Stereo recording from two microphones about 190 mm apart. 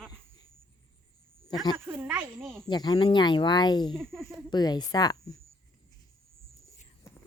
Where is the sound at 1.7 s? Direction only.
10° right (ahead or behind).